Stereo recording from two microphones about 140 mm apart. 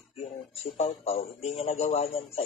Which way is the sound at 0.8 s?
50° left (ahead or behind).